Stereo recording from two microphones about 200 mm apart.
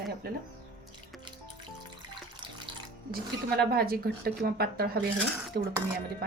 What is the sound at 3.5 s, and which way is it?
Speech, 50° right (ahead or behind).